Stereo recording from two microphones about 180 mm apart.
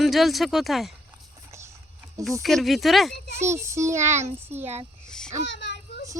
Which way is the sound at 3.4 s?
15° right (ahead or behind).